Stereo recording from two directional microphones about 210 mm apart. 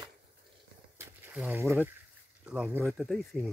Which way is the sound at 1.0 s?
10° right (ahead or behind).